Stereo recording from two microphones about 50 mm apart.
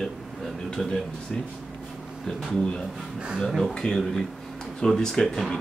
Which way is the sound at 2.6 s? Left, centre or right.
Centre.